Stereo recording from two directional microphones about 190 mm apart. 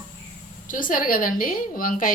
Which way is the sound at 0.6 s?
45° left (ahead or behind).